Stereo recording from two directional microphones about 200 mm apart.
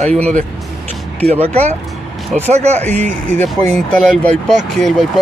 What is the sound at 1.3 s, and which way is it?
Speech, 30° right (ahead or behind).